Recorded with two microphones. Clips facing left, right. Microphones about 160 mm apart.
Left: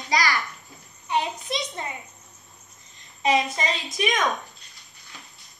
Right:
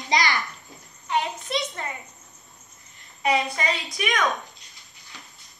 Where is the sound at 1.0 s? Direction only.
15° left (ahead or behind).